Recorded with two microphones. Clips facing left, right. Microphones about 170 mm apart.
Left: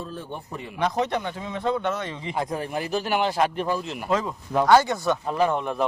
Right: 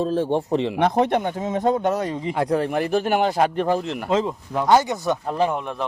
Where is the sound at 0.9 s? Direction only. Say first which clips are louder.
Right 3 dB; 55° right (ahead or behind); by 2.3 s 40° right (ahead or behind).